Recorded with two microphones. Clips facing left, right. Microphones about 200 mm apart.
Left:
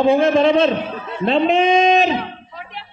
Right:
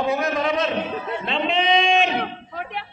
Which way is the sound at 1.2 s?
40° left (ahead or behind).